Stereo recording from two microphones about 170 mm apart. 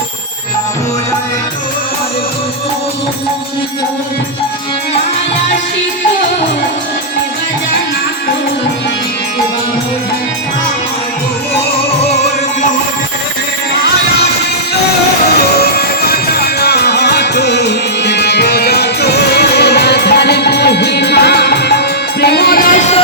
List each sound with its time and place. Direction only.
15.5 s music: 65° left (ahead or behind)